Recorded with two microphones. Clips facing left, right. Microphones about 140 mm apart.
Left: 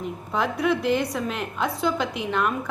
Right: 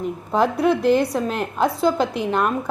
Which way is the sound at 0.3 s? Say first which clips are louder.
Right 5 dB; 35° right (ahead or behind).